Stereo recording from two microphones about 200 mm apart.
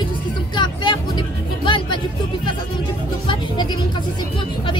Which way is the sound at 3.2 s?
20° left (ahead or behind).